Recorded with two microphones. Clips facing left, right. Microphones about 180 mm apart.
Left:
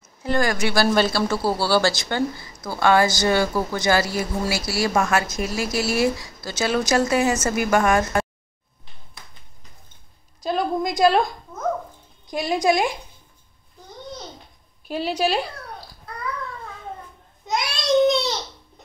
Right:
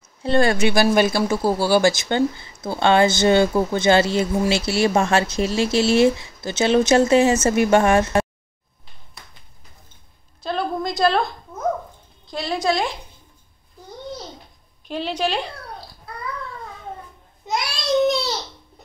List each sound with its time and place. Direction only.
0.2 s speech: 30° right (ahead or behind)
10.4 s a woman's voice: 10° left (ahead or behind)
14.9 s a woman's voice: 10° left (ahead or behind)
18.0 s a sound: 5° right (ahead or behind)